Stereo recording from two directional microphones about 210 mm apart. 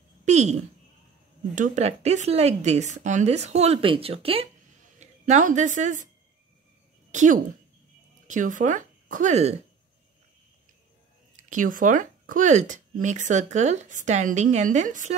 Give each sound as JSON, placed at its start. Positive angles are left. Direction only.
{"t": 0.2, "sound": "a woman's voice", "side_deg": -35}
{"t": 7.1, "sound": "speech", "side_deg": -35}
{"t": 11.3, "sound": "speech", "side_deg": -35}